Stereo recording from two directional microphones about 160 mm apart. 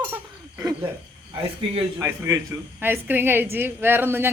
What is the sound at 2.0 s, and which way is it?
A man's voice, 15° right (ahead or behind).